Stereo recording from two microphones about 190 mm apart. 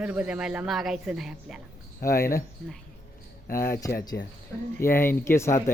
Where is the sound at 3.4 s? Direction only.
50° left (ahead or behind).